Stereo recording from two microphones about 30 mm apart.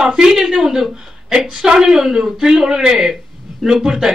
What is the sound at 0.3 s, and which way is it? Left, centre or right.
A man's voice, centre.